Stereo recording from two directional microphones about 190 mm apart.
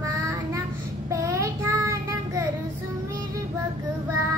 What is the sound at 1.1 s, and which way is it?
Child singing, 15° right (ahead or behind).